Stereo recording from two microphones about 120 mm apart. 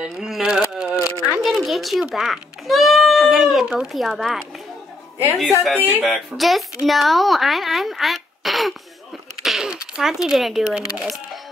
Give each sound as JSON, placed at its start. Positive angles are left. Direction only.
{"t": 0.0, "sound": "a sound", "side_deg": -5}
{"t": 1.2, "sound": "music", "side_deg": -5}
{"t": 5.8, "sound": "speech", "side_deg": -15}
{"t": 6.0, "sound": "speech", "side_deg": 0}